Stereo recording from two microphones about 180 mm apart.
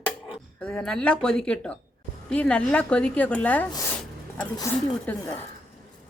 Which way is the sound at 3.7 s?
20° left (ahead or behind).